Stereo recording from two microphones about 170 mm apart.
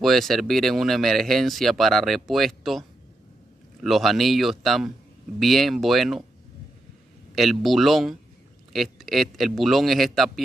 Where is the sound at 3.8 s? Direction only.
Centre (ahead or behind).